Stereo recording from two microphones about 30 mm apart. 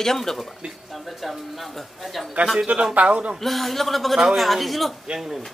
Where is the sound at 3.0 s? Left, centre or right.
Right.